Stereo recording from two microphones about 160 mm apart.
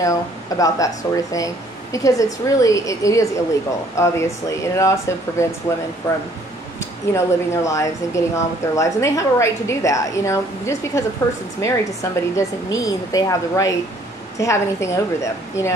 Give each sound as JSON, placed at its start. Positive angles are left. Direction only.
{"t": 0.0, "sound": "speech", "side_deg": 20}